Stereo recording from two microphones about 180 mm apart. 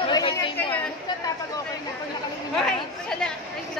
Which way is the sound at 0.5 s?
10° left (ahead or behind).